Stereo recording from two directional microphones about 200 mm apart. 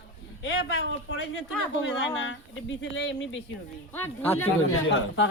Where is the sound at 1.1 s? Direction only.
65° left (ahead or behind).